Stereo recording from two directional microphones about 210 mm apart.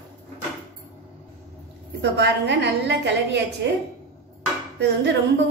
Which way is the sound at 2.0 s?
55° right (ahead or behind).